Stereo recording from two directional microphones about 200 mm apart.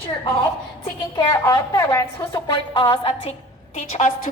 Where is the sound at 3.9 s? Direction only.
40° left (ahead or behind).